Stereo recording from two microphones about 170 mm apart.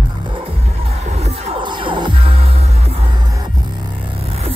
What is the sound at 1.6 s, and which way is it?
Music, 30° right (ahead or behind).